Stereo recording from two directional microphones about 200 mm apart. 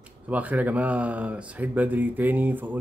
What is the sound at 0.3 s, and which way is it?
A man's voice, 5° right (ahead or behind).